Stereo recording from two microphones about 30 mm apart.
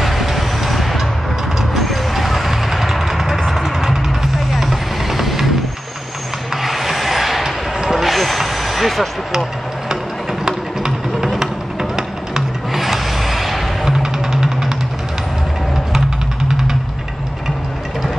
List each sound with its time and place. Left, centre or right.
0.0 s vehicle: centre
6.5 s a sound: centre
7.9 s vehicle: centre
12.7 s vehicle: centre
13.8 s music: right